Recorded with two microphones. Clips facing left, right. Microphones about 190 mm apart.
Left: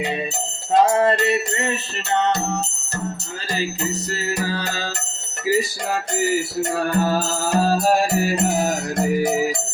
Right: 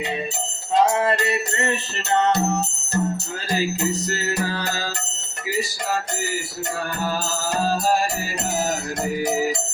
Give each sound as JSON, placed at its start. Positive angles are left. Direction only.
{"t": 0.9, "sound": "music", "side_deg": 25}
{"t": 4.4, "sound": "music", "side_deg": 15}